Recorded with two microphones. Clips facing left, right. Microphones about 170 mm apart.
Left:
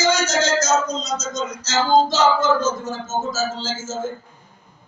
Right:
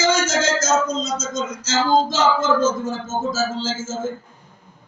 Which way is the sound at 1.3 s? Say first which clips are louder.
Even; 50° right (ahead or behind).